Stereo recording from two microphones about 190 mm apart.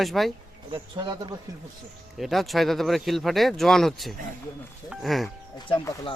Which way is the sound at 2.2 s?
Centre (ahead or behind).